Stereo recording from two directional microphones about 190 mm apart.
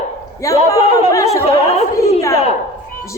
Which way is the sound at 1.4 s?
30° left (ahead or behind).